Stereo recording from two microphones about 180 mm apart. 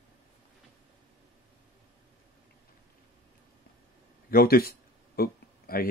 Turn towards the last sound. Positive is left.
turn(degrees=55)  # may be behind; listen again after turning